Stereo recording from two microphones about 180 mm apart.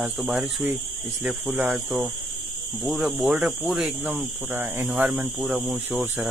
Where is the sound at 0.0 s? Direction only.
5° right (ahead or behind).